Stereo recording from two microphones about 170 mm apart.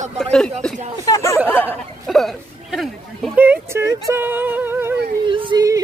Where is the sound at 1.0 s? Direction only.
20° left (ahead or behind).